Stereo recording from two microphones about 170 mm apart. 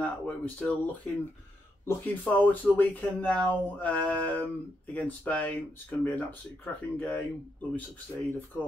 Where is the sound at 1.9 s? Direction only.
10° left (ahead or behind).